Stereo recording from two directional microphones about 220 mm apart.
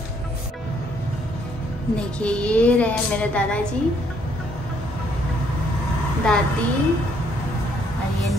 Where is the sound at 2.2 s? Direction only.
5° left (ahead or behind).